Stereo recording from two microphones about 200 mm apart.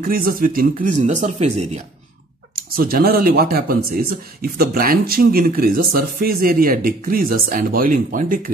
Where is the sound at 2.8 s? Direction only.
50° right (ahead or behind).